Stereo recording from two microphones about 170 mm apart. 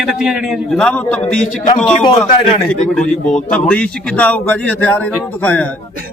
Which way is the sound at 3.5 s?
5° left (ahead or behind).